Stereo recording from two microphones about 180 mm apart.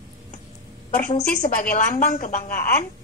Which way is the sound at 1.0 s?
45° left (ahead or behind).